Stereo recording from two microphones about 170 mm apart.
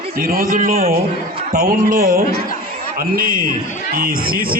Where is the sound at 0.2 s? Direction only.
60° right (ahead or behind).